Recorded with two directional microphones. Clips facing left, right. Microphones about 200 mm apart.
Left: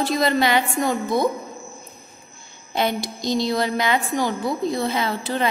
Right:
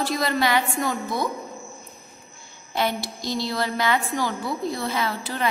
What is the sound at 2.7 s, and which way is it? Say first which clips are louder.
A woman's voice: left 2 dB; 20° left (ahead or behind).